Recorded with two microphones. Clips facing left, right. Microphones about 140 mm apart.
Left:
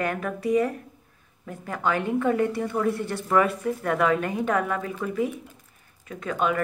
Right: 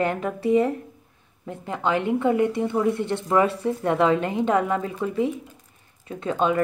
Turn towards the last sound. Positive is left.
turn(degrees=-30)  # may be behind; listen again after turning